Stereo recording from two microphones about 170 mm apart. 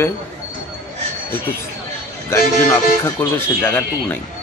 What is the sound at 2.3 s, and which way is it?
Speech, 15° left (ahead or behind).